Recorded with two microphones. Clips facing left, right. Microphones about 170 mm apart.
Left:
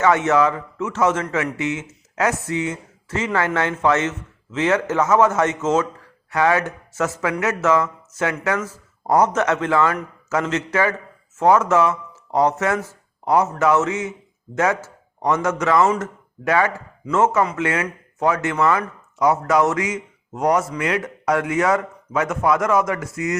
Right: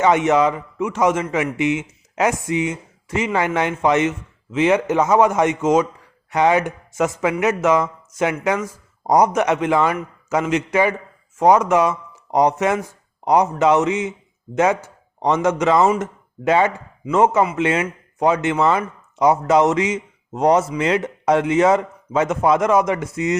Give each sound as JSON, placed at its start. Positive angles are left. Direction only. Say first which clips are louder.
{"t": 0.0, "sound": "a man's voice", "louder": "right 1 dB", "side_deg": -15}